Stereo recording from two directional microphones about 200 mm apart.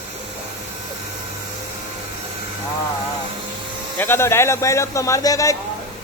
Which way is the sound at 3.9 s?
10° left (ahead or behind).